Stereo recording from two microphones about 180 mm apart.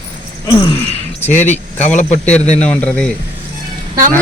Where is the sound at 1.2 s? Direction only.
40° left (ahead or behind).